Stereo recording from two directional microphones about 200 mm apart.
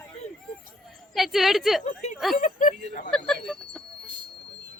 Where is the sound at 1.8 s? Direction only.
35° left (ahead or behind).